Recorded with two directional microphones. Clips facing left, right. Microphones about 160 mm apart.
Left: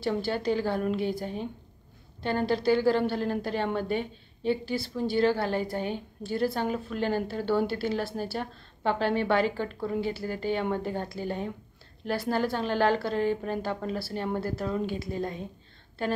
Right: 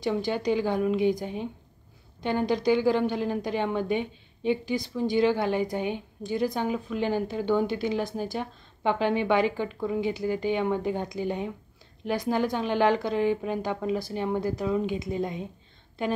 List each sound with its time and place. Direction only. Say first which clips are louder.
0.2 s a woman's voice: right 2 dB; 15° right (ahead or behind)